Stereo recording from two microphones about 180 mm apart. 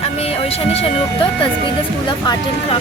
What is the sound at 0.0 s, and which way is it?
Music, 35° left (ahead or behind).